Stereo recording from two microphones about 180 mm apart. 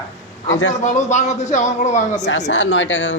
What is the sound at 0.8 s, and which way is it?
Speech, 40° left (ahead or behind).